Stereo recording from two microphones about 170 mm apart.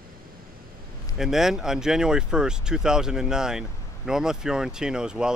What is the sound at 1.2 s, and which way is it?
Speech, centre (ahead or behind).